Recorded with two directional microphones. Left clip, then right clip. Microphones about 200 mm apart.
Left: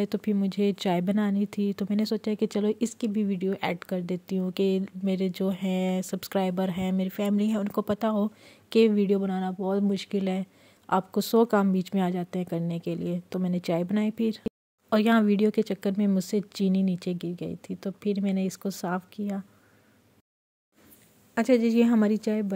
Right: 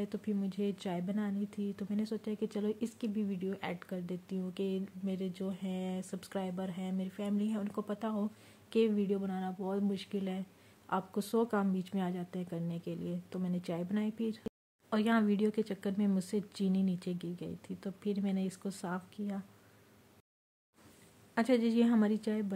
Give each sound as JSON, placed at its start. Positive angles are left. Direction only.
{"t": 0.0, "sound": "speech", "side_deg": 45}
{"t": 21.4, "sound": "a woman's voice", "side_deg": 25}